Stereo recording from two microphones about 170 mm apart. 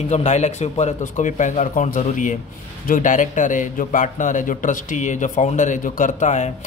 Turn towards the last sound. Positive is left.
turn(degrees=45)  # may be behind; listen again after turning